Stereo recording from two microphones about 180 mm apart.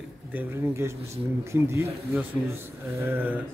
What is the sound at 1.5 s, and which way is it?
Speech, 15° right (ahead or behind).